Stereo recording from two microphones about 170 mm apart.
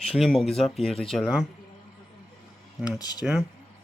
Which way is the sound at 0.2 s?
Centre (ahead or behind).